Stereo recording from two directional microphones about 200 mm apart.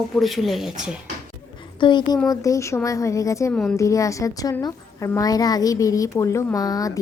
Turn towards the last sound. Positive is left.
turn(degrees=20)  # may be behind; listen again after turning